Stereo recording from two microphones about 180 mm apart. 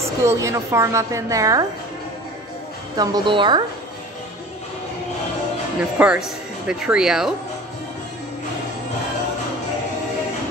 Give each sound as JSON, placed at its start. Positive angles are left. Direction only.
{"t": 0.0, "sound": "a woman's voice", "side_deg": -15}
{"t": 3.0, "sound": "a woman's voice", "side_deg": -25}
{"t": 5.9, "sound": "speech", "side_deg": -5}